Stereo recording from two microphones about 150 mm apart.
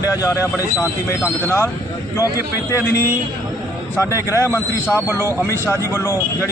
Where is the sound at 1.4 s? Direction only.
15° left (ahead or behind).